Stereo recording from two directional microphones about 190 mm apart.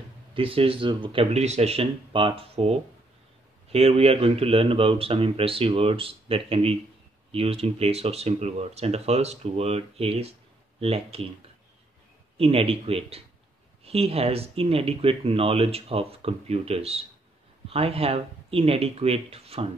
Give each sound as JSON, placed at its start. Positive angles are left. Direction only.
{"t": 0.3, "sound": "speech", "side_deg": -30}
{"t": 12.4, "sound": "speech", "side_deg": -30}